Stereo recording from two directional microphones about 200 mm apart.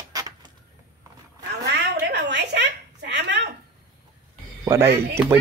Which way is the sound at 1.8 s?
55° right (ahead or behind).